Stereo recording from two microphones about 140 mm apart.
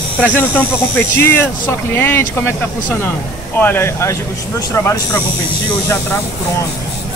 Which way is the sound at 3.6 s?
15° left (ahead or behind).